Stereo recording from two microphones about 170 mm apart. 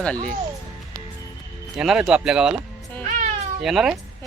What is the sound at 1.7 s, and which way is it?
Speech, 5° right (ahead or behind).